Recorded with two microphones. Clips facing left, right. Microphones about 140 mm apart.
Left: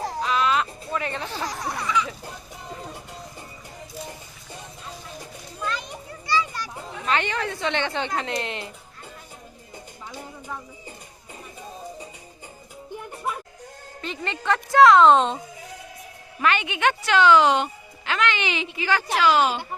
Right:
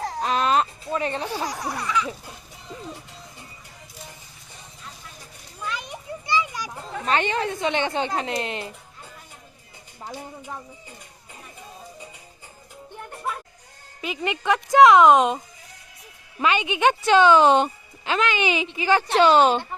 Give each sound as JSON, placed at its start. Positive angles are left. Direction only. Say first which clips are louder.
{"t": 0.2, "sound": "music", "louder": "right 2 dB", "side_deg": -45}
{"t": 0.9, "sound": "speech", "louder": "right 3 dB", "side_deg": -25}
{"t": 1.2, "sound": "speech", "louder": "right 2 dB", "side_deg": -15}
{"t": 6.2, "sound": "children playing", "louder": "even", "side_deg": -20}
{"t": 7.1, "sound": "a woman's voice", "louder": "right 2 dB", "side_deg": -20}
{"t": 14.0, "sound": "speech", "louder": "right 3 dB", "side_deg": -10}
{"t": 16.4, "sound": "speech", "louder": "right 2 dB", "side_deg": -15}
{"t": 19.1, "sound": "a woman's voice", "louder": "right 4 dB", "side_deg": -30}